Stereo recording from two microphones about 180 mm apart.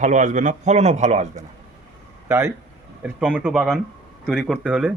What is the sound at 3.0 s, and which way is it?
A man's voice, 5° right (ahead or behind).